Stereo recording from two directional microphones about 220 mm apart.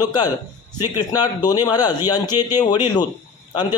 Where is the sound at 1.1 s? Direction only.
20° left (ahead or behind).